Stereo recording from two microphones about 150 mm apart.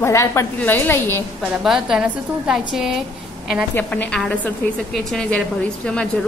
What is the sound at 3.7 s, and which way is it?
A woman's voice, 10° left (ahead or behind).